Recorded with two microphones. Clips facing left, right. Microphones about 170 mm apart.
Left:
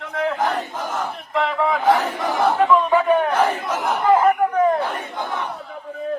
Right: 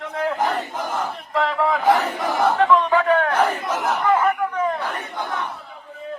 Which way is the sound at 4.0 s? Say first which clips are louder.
Left 5 dB; 30° left (ahead or behind).